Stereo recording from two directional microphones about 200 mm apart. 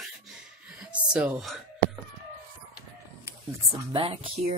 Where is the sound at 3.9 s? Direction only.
25° right (ahead or behind).